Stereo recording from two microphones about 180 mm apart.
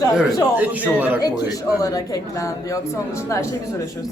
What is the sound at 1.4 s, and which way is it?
Speech, 20° left (ahead or behind).